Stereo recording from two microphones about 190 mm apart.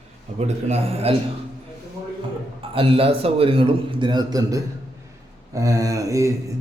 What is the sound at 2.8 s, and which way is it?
A man's voice, 30° right (ahead or behind).